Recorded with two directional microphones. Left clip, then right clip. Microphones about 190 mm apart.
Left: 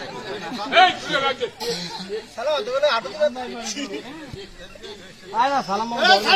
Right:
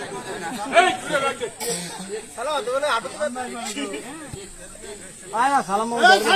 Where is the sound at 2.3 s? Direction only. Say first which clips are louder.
Left 2 dB; 55° right (ahead or behind).